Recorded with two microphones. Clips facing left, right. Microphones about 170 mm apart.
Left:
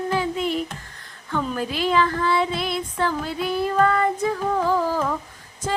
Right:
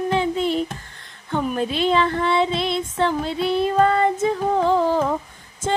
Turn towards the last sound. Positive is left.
turn(degrees=-25)  # may be behind; listen again after turning